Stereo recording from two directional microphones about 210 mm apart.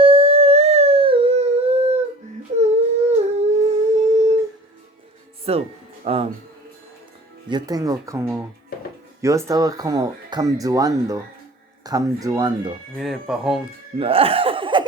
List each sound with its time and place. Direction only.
0.0 s howl: 25° right (ahead or behind)
2.6 s a sound: 30° right (ahead or behind)
5.5 s speech: 30° right (ahead or behind)
7.5 s speech: 15° right (ahead or behind)
13.0 s speech: centre (ahead or behind)
14.0 s laughter: 25° right (ahead or behind)